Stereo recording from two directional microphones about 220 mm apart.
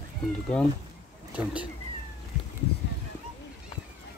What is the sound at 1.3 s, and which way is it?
Speech, 5° right (ahead or behind).